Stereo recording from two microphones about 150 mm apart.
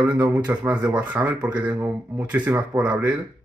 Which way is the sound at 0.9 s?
10° right (ahead or behind).